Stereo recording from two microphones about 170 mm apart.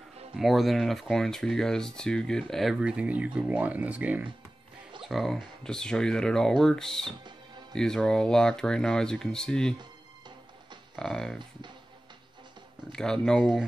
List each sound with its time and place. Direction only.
0.4 s speech: centre (ahead or behind)
9.8 s music: 25° right (ahead or behind)
11.0 s speech: 5° left (ahead or behind)
12.9 s speech: 5° left (ahead or behind)